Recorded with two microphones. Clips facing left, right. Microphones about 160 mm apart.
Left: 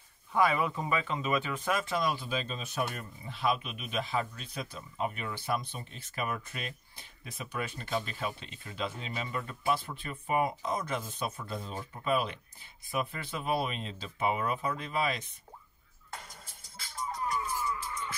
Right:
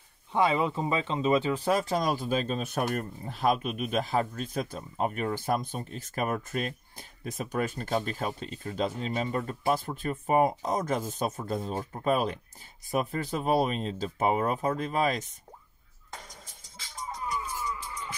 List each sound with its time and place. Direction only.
0.3 s speech: 25° right (ahead or behind); by 15.3 s 45° right (ahead or behind)